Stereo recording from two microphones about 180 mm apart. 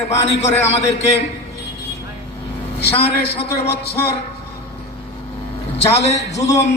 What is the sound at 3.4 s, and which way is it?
Speech, 60° left (ahead or behind).